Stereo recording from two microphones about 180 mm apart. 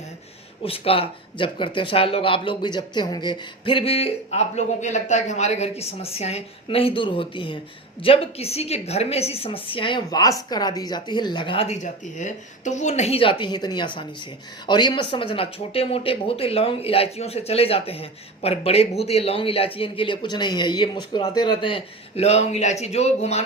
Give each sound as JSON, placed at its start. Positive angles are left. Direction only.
{"t": 0.6, "sound": "speech", "side_deg": 30}